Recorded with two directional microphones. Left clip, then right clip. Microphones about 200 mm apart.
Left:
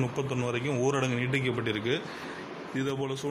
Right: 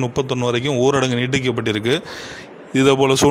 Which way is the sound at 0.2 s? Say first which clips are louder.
Right 14 dB; 40° right (ahead or behind).